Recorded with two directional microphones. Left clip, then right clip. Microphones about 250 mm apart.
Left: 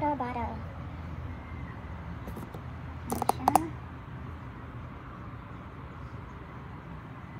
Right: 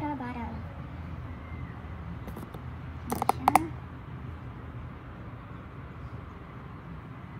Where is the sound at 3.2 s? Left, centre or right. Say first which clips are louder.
Right 1 dB; centre.